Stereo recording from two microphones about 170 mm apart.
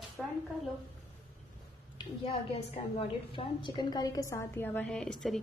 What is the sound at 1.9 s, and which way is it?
A woman's voice, 35° left (ahead or behind).